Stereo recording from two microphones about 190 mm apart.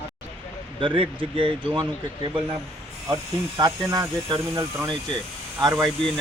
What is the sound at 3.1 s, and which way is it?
Speech, 20° right (ahead or behind).